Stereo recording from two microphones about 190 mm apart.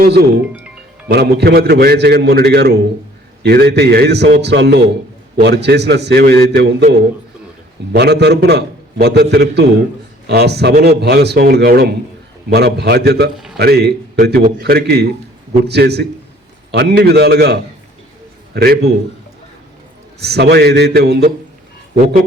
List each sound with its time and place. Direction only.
0.0 s a man's voice: 55° right (ahead or behind)
7.9 s a man's voice: 60° right (ahead or behind)
20.1 s a man's voice: 60° right (ahead or behind)